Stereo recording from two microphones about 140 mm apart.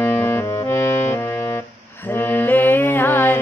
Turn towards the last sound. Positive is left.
turn(degrees=15)  # may be behind; listen again after turning